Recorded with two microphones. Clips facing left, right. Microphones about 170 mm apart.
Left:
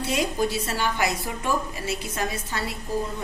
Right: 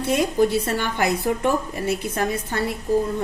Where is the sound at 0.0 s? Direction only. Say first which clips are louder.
Right 6 dB; 55° right (ahead or behind).